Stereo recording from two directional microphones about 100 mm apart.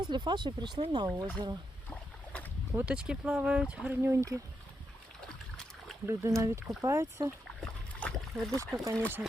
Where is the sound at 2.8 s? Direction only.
10° right (ahead or behind).